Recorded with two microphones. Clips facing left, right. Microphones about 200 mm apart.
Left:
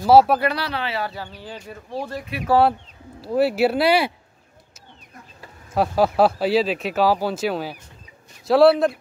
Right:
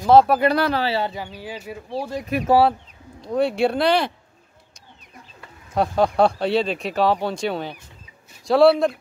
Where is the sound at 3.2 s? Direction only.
5° left (ahead or behind).